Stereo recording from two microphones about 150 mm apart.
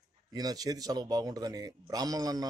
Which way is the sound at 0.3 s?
25° right (ahead or behind).